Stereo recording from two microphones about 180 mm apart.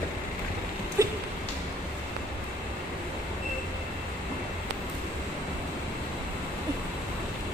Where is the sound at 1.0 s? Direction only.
15° right (ahead or behind).